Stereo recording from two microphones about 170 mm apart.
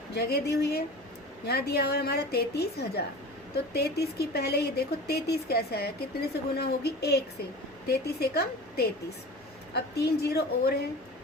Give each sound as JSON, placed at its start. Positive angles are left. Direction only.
{"t": 0.1, "sound": "speech", "side_deg": 75}